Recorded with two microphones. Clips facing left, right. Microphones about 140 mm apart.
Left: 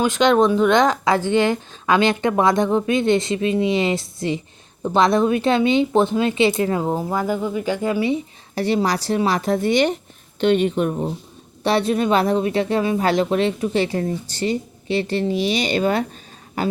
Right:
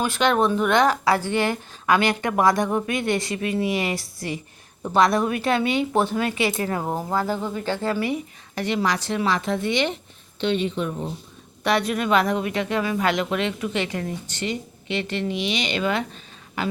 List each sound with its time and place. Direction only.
0.0 s speech: 15° left (ahead or behind)
8.5 s speech: 35° left (ahead or behind)
10.4 s speech: 50° left (ahead or behind)
11.6 s speech: 30° left (ahead or behind)